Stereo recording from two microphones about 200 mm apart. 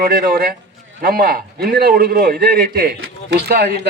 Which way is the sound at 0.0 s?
45° right (ahead or behind).